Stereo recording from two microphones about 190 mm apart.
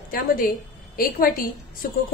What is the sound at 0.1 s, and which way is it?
A woman's voice, 50° left (ahead or behind).